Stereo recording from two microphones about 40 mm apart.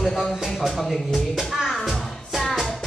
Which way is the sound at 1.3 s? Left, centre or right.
Centre.